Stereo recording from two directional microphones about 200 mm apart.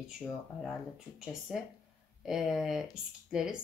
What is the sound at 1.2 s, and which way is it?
Speech, centre (ahead or behind).